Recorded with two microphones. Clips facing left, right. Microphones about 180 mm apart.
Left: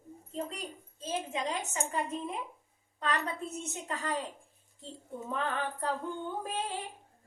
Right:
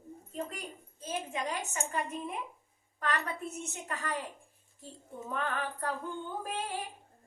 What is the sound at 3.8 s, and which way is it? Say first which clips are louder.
Speech: left 2 dB; 25° left (ahead or behind).